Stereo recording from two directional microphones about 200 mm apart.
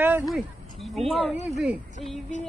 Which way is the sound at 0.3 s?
Centre (ahead or behind).